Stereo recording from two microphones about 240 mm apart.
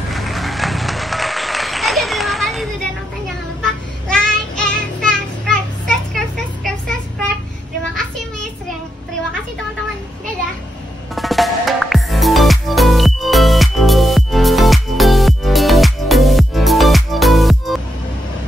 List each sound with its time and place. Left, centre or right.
0.1 s applause: centre
4.1 s child singing: centre
11.1 s music: centre